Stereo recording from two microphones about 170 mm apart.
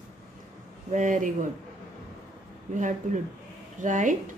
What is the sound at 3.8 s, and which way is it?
Speech, 50° right (ahead or behind).